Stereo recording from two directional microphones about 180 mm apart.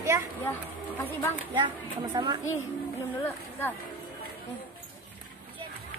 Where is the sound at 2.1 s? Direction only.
25° right (ahead or behind).